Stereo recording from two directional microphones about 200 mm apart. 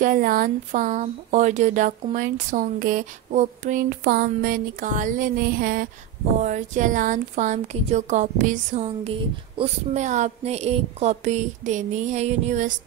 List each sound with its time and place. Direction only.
0.0 s speech: 45° right (ahead or behind)